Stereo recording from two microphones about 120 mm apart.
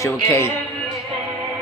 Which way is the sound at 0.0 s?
20° left (ahead or behind).